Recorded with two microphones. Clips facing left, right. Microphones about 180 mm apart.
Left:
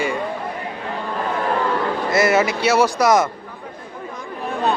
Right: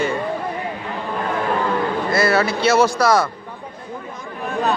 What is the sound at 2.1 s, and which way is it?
Speech, 20° left (ahead or behind).